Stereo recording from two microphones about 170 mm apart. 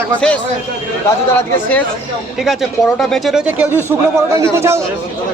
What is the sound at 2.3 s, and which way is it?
A man's voice, centre (ahead or behind).